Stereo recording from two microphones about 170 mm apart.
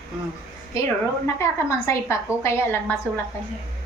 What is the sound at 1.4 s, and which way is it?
A woman's voice, 15° left (ahead or behind).